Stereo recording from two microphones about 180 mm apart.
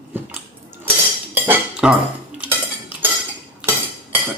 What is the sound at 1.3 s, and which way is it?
Cutlery, 10° right (ahead or behind).